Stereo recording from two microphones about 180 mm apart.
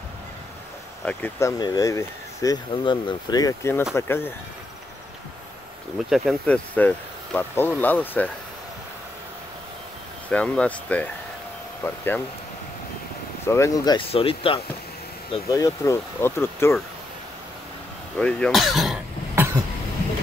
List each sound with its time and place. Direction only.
1.0 s speech: 10° left (ahead or behind)
6.0 s speech: centre (ahead or behind)
10.3 s speech: 5° left (ahead or behind)
13.5 s speech: 20° left (ahead or behind)
15.5 s speech: 15° left (ahead or behind)
18.1 s speech: 5° left (ahead or behind)